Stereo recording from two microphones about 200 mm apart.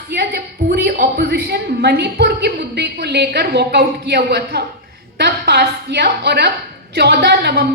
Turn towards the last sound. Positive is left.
turn(degrees=-55)  # may be behind; listen again after turning